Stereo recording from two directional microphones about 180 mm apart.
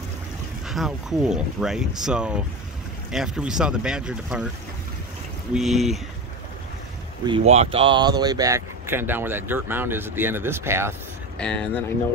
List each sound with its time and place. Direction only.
0.7 s speech: centre (ahead or behind)
5.5 s speech: centre (ahead or behind)
7.2 s speech: 30° right (ahead or behind); by 11.0 s 15° right (ahead or behind)
11.3 s speech: 5° left (ahead or behind)